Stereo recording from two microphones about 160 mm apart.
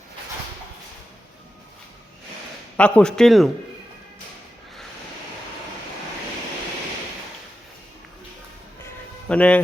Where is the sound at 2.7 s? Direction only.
10° left (ahead or behind).